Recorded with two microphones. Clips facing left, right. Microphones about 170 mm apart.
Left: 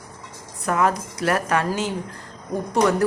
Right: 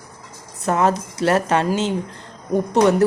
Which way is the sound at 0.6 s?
25° right (ahead or behind).